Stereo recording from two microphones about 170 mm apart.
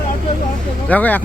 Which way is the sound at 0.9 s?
10° left (ahead or behind).